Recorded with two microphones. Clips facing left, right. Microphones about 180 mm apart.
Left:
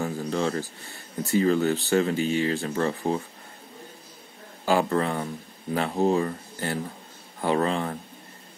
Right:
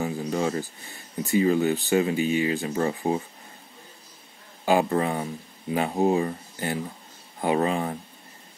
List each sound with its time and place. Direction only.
0.0 s speech: 15° right (ahead or behind)
4.6 s speech: 15° right (ahead or behind)